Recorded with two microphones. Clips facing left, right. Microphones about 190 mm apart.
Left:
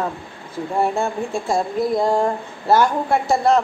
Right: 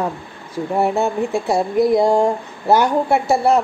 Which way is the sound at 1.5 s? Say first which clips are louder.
Right 4 dB; 15° right (ahead or behind).